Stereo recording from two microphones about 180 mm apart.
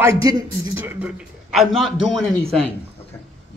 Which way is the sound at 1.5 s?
Centre (ahead or behind).